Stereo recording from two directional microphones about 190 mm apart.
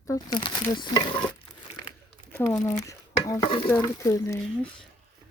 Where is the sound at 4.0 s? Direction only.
15° left (ahead or behind).